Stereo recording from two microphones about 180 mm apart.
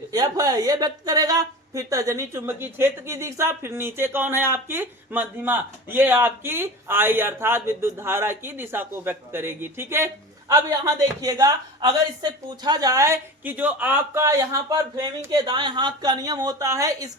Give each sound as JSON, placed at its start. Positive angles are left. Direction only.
{"t": 0.1, "sound": "a woman's voice", "side_deg": -20}